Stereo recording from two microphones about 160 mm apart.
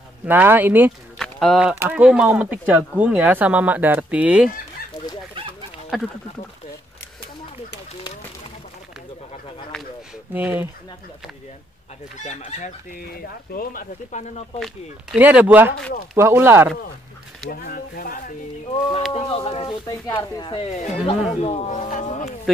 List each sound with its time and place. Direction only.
0.2 s speech: 10° right (ahead or behind)
1.1 s a sound: 5° left (ahead or behind)
1.6 s speech: 10° right (ahead or behind)
5.9 s speech: centre (ahead or behind)
10.3 s speech: 10° right (ahead or behind)
12.2 s speech: 45° left (ahead or behind)
13.0 s speech: 65° left (ahead or behind)
14.6 s speech: 5° right (ahead or behind)
17.5 s speech: 65° left (ahead or behind)
18.7 s speech: 35° left (ahead or behind)
19.9 s speech: 20° left (ahead or behind)
20.5 s speech: 35° left (ahead or behind)